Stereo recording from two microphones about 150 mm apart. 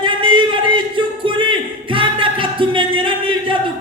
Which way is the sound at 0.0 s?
35° right (ahead or behind).